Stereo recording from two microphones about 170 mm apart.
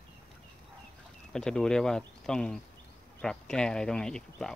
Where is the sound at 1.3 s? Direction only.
5° left (ahead or behind).